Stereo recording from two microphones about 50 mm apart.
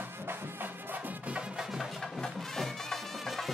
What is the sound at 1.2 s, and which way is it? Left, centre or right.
Music, right.